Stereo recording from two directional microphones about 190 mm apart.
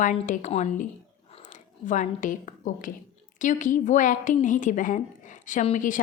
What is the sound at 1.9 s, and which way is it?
A woman's voice, 45° left (ahead or behind).